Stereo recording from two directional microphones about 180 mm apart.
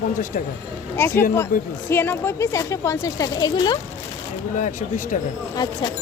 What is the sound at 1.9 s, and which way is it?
Speech, 10° left (ahead or behind).